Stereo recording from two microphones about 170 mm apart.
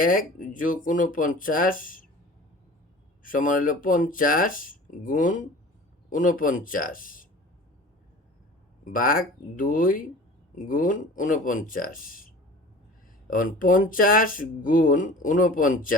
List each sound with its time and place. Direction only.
0.0 s speech: 55° left (ahead or behind)
3.2 s speech: 50° left (ahead or behind)
8.8 s speech: 55° left (ahead or behind)